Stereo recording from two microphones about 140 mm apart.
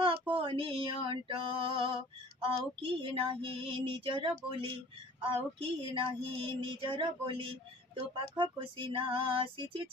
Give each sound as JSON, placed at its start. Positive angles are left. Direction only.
{"t": 0.0, "sound": "female singing", "side_deg": -40}
{"t": 3.0, "sound": "female singing", "side_deg": -40}